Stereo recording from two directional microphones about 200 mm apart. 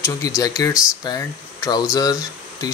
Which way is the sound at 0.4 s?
20° left (ahead or behind).